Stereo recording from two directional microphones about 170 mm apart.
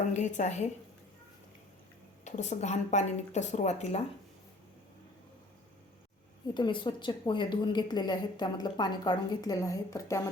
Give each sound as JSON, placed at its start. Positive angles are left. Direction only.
{"t": 0.1, "sound": "a woman's voice", "side_deg": 45}
{"t": 2.2, "sound": "speech", "side_deg": 45}
{"t": 6.5, "sound": "a woman's voice", "side_deg": 25}